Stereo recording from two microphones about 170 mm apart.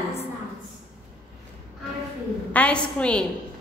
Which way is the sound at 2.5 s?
10° left (ahead or behind).